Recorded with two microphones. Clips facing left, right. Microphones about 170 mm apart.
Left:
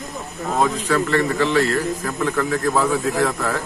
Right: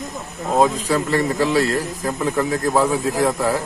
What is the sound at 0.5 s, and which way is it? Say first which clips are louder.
A man's voice: right 2 dB; 15° right (ahead or behind).